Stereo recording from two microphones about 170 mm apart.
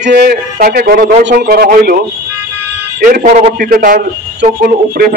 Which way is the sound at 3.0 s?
55° right (ahead or behind).